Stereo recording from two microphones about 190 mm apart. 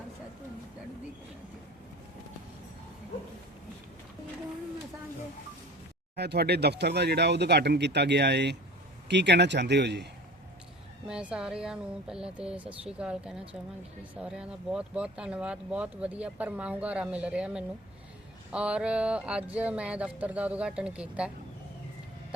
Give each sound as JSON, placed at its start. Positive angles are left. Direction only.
{"t": 6.1, "sound": "speech", "side_deg": -60}
{"t": 11.1, "sound": "speech", "side_deg": -5}